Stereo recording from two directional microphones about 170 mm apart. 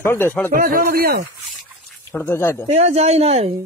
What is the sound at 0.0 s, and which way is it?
Speech, 15° left (ahead or behind).